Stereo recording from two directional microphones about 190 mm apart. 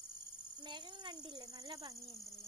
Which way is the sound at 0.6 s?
25° right (ahead or behind).